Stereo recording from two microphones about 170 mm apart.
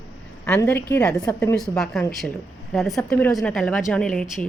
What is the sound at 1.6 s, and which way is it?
A woman's voice, centre (ahead or behind).